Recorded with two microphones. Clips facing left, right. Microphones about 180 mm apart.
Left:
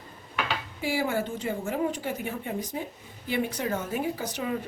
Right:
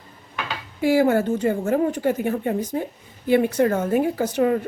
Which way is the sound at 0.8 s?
55° right (ahead or behind).